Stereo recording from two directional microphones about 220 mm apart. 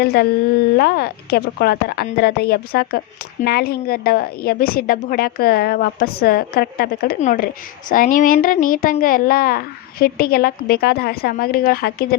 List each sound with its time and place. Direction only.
0.0 s a woman's voice: 45° left (ahead or behind)